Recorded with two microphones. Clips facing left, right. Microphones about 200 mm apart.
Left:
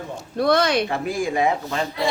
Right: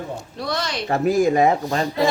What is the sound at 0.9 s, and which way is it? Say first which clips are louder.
Speech: right 6 dB; 45° right (ahead or behind).